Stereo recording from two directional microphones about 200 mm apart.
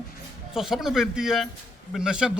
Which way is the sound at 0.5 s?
Centre (ahead or behind).